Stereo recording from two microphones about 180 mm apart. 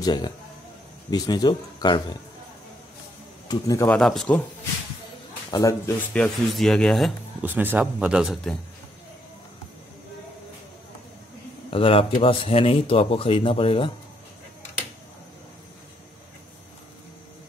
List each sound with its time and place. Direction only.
0.0 s a man's voice: 25° left (ahead or behind)
3.4 s a man's voice: 20° left (ahead or behind)
3.9 s a man's voice: 5° left (ahead or behind)
5.5 s a man's voice: 20° left (ahead or behind)
6.1 s a man's voice: 5° left (ahead or behind)
7.4 s a man's voice: 10° right (ahead or behind)
11.7 s speech: 30° left (ahead or behind)